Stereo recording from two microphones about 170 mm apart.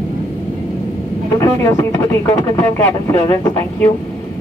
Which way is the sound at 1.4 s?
15° left (ahead or behind).